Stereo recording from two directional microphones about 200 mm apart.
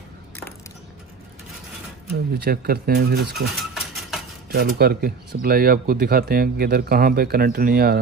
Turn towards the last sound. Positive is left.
turn(degrees=-50)  # may be behind; listen again after turning